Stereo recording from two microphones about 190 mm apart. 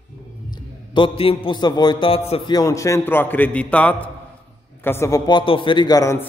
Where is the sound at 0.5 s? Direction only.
25° left (ahead or behind).